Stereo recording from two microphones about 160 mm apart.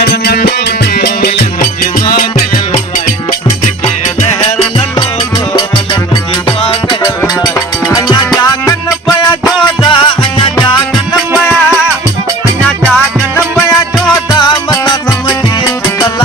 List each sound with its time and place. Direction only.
0.3 s music: 80° left
7.9 s music: 25° left (ahead or behind)
11.3 s music: 5° right (ahead or behind)
12.6 s music: 5° left (ahead or behind)
14.3 s music: 25° left (ahead or behind)